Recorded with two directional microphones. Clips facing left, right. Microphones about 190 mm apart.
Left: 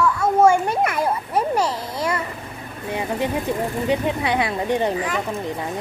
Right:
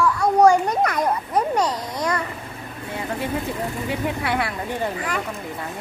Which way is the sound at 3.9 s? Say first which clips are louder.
Left 4 dB; 20° left (ahead or behind).